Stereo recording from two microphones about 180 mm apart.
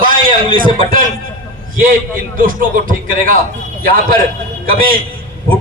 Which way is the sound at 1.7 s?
50° right (ahead or behind).